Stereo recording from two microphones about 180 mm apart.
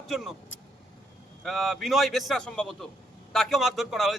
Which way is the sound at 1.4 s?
Centre (ahead or behind).